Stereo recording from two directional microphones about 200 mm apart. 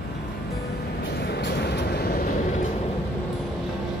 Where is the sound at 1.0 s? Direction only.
55° left (ahead or behind).